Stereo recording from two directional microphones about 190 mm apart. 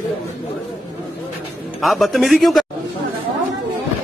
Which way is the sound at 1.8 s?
Centre (ahead or behind).